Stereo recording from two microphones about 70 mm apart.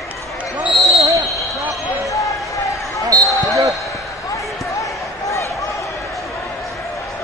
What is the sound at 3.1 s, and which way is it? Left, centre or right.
Basketball bounce, right.